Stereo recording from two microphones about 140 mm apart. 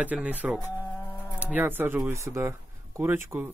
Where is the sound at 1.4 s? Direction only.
15° right (ahead or behind).